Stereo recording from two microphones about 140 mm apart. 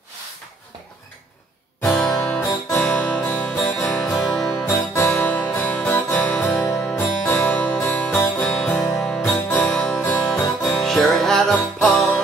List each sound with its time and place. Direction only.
1.8 s music: 20° left (ahead or behind)
2.8 s music: 5° left (ahead or behind)
4.6 s music: 15° left (ahead or behind)
8.8 s music: 25° left (ahead or behind)
9.5 s music: 5° left (ahead or behind)